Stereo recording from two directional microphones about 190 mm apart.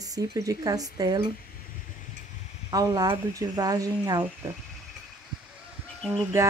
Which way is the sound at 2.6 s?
20° right (ahead or behind).